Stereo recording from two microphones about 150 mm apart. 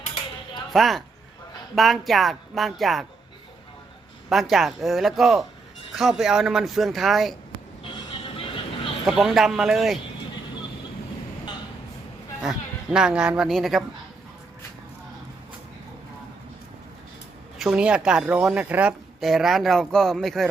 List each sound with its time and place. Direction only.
0.7 s a woman's voice: centre (ahead or behind)
4.3 s a woman's voice: centre (ahead or behind)
7.9 s music: 35° left (ahead or behind)
9.0 s a woman's voice: centre (ahead or behind)
12.4 s speech: 5° right (ahead or behind)
17.6 s a woman's voice: 5° right (ahead or behind)